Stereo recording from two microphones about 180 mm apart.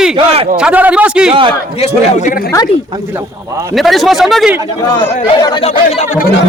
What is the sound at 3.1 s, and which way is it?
Speech, 20° right (ahead or behind).